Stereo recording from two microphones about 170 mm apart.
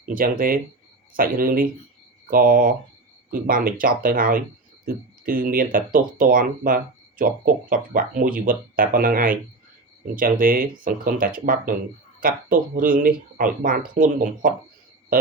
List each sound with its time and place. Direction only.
0.1 s speech: 55° right (ahead or behind)